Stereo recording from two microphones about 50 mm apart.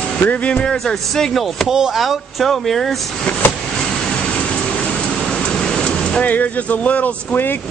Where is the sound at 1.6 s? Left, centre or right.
Centre.